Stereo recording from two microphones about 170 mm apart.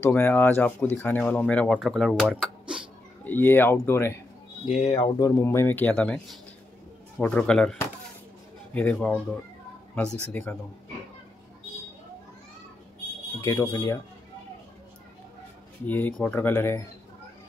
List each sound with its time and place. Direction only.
0.0 s speech: 10° left (ahead or behind); by 2.8 s 5° right (ahead or behind)
3.3 s speech: 10° left (ahead or behind)
4.6 s speech: 40° left (ahead or behind)
5.2 s a man's voice: 15° left (ahead or behind)
13.4 s speech: 15° left (ahead or behind)
15.9 s speech: 10° left (ahead or behind)